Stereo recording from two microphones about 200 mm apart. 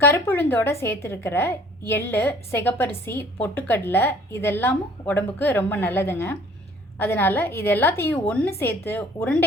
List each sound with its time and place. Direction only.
0.0 s a woman's voice: 10° left (ahead or behind)